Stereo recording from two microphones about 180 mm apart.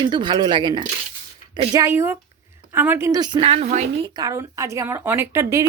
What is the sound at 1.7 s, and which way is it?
A woman's voice, 15° right (ahead or behind).